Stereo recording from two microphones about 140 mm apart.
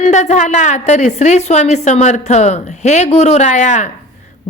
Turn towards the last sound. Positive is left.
turn(degrees=60)  # may be behind; listen again after turning